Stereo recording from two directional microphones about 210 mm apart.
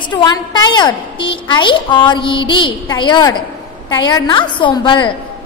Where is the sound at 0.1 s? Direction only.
20° left (ahead or behind).